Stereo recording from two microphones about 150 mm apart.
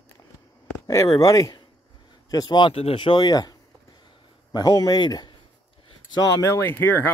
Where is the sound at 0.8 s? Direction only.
25° left (ahead or behind).